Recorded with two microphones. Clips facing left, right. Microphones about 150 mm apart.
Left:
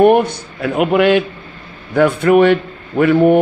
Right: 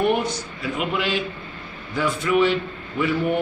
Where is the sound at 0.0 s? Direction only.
55° left (ahead or behind).